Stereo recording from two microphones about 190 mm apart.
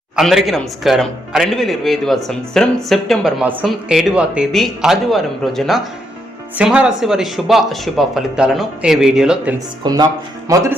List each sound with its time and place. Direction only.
0.2 s speech: centre (ahead or behind)
9.8 s speech: 20° right (ahead or behind)